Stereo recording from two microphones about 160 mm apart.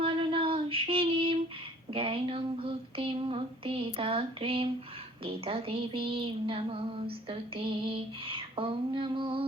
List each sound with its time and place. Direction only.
0.0 s female singing: 35° right (ahead or behind)
1.9 s a sound: 35° right (ahead or behind)
5.2 s speech: 35° right (ahead or behind)